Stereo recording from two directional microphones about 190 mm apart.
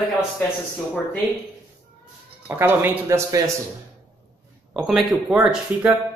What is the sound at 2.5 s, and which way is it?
Speech, 10° right (ahead or behind).